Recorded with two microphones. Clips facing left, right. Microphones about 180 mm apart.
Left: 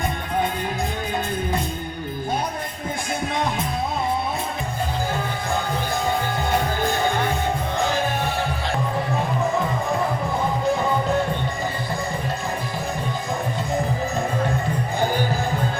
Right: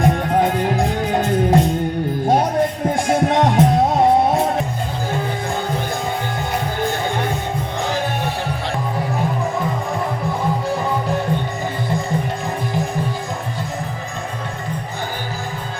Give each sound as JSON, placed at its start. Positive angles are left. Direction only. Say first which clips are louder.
{"t": 0.0, "sound": "music", "louder": "right 8 dB", "side_deg": -90}